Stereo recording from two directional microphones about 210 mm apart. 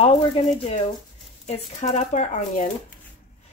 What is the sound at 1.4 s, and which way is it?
A woman's voice, 30° left (ahead or behind).